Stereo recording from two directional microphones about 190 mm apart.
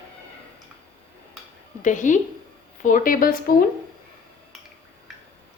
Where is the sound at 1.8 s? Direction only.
40° left (ahead or behind).